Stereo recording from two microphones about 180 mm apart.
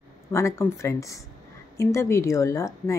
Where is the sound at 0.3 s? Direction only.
15° left (ahead or behind).